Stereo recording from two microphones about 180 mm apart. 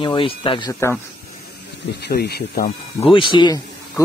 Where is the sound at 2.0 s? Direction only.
65° left (ahead or behind).